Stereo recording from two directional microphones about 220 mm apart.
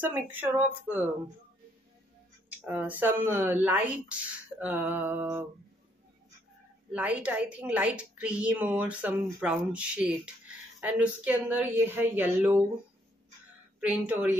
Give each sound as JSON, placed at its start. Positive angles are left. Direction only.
{"t": 0.0, "sound": "a woman's voice", "side_deg": -10}
{"t": 2.5, "sound": "a woman's voice", "side_deg": -10}
{"t": 6.9, "sound": "a woman's voice", "side_deg": -5}
{"t": 13.7, "sound": "a woman's voice", "side_deg": -5}